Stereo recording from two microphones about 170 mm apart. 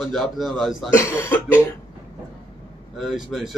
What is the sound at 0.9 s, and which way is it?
Speech, 15° left (ahead or behind).